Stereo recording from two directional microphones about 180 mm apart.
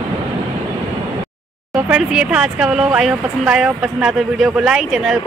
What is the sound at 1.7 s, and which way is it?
Speech, 5° right (ahead or behind).